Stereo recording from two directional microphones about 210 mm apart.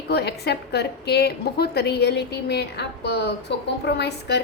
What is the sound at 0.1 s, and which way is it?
A woman's voice, 50° left (ahead or behind).